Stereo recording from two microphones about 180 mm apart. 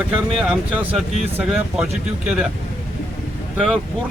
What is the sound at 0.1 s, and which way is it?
Speech, 5° right (ahead or behind).